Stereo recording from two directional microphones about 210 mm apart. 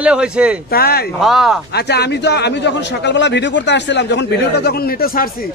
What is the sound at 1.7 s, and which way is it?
Speech, 50° left (ahead or behind).